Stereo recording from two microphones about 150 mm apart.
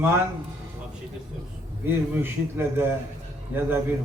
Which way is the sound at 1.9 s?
15° right (ahead or behind).